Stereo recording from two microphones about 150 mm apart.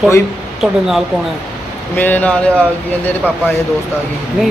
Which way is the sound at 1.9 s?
10° left (ahead or behind).